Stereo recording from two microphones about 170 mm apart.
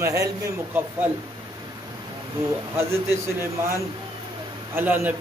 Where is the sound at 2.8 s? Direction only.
15° right (ahead or behind).